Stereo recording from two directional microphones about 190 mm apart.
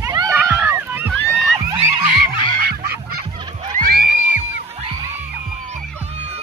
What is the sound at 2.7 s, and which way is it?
Goose, 55° right (ahead or behind).